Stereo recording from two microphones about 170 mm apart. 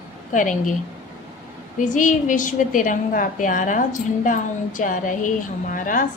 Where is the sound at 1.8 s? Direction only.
50° left (ahead or behind).